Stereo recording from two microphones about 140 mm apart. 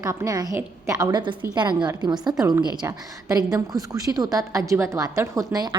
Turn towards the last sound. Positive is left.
turn(degrees=-30)  # may be behind; listen again after turning